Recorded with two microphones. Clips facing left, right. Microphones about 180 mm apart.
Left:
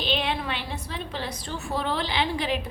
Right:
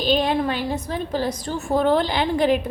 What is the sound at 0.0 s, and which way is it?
A woman's voice, 40° right (ahead or behind).